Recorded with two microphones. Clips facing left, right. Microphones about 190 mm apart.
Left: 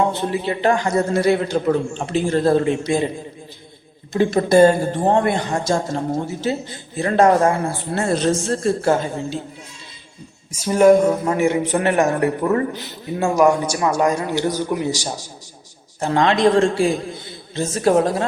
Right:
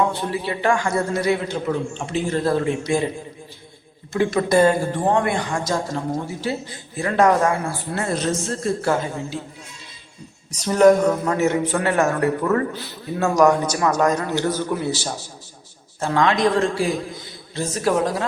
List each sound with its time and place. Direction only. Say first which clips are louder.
0.1 s a man's voice: left 3 dB; 20° left (ahead or behind)
4.2 s a man's voice: left 2 dB; 30° left (ahead or behind)
4.5 s a man's voice: left 4 dB; 40° left (ahead or behind)
4.8 s a man's voice: left 2 dB; 25° left (ahead or behind)
10.5 s speech: left 2 dB; 10° left (ahead or behind)
16.0 s a man's voice: left 2 dB; 25° left (ahead or behind)